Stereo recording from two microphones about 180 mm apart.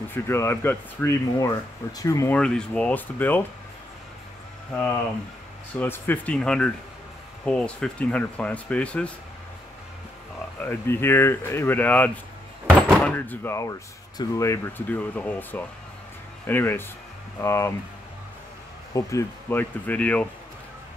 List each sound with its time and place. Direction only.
0.1 s speech: 15° left (ahead or behind)
2.3 s speech: 5° left (ahead or behind)
5.8 s speech: 10° left (ahead or behind)
10.6 s speech: 10° left (ahead or behind)
12.6 s door: 10° right (ahead or behind)
13.0 s speech: 10° left (ahead or behind)
18.9 s speech: 15° left (ahead or behind)